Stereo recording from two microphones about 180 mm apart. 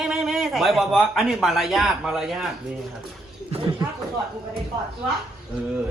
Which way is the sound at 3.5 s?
25° right (ahead or behind).